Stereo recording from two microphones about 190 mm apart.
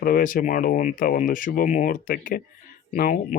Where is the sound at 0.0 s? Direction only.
45° left (ahead or behind).